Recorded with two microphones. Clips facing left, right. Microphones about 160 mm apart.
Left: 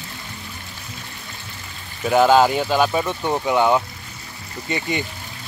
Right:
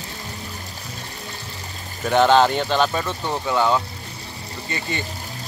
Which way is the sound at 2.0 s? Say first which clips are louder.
Left 1 dB; 5° left (ahead or behind).